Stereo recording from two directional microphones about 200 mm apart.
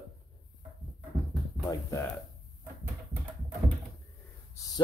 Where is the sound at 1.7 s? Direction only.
15° left (ahead or behind).